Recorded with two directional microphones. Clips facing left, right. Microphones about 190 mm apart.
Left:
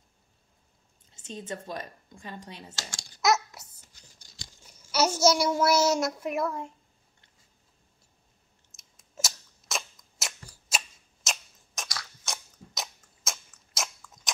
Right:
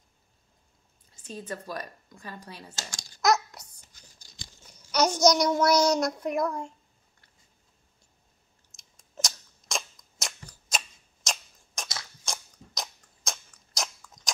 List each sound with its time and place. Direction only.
1.1 s speech: 25° left (ahead or behind)
3.2 s babbling: centre (ahead or behind)
4.9 s a child's voice: 5° left (ahead or behind)
8.7 s scissors: 5° left (ahead or behind)
11.2 s tick-tock: centre (ahead or behind)
12.3 s biting: centre (ahead or behind)